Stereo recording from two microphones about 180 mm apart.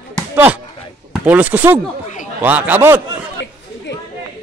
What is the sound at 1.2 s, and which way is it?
Speech, 10° right (ahead or behind).